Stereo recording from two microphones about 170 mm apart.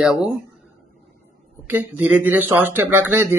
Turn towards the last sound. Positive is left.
turn(degrees=-10)  # may be behind; listen again after turning